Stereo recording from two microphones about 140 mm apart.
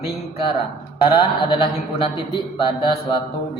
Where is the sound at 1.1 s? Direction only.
35° left (ahead or behind).